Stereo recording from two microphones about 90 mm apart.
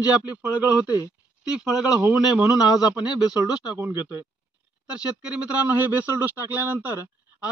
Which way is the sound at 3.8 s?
25° right (ahead or behind).